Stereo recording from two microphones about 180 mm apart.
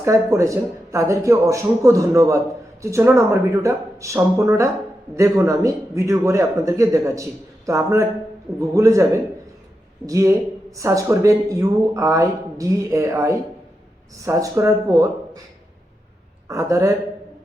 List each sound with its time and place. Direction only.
0.0 s a man's voice: 15° right (ahead or behind)
16.5 s a man's voice: 15° right (ahead or behind)